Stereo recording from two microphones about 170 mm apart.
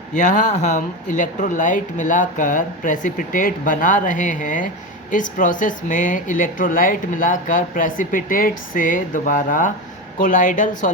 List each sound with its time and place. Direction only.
0.2 s a woman's voice: 50° left (ahead or behind)